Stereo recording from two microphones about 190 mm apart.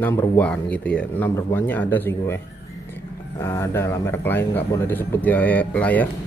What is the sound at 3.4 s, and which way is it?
Speech, 10° left (ahead or behind).